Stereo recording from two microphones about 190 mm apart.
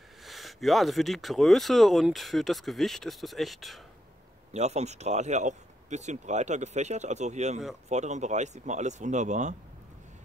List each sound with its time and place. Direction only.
0.2 s speech: centre (ahead or behind)
4.5 s speech: 35° right (ahead or behind)